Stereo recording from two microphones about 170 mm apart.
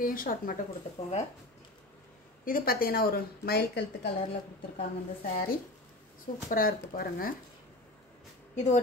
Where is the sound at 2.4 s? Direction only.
60° left (ahead or behind); by 4.1 s 75° left (ahead or behind).